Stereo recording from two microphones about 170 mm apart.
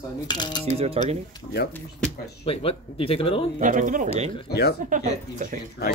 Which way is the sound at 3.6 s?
50° right (ahead or behind).